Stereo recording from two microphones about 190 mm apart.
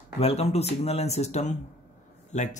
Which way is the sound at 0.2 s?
35° left (ahead or behind).